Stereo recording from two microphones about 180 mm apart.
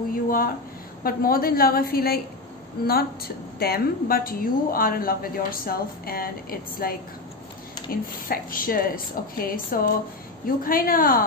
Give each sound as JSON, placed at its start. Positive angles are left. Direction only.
{"t": 0.1, "sound": "a woman's voice", "side_deg": 50}
{"t": 3.5, "sound": "a woman's voice", "side_deg": 60}